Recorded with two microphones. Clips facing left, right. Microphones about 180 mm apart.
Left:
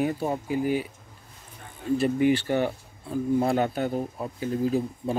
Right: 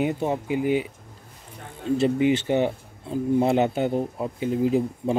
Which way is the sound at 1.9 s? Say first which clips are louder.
Right 1 dB; 20° right (ahead or behind).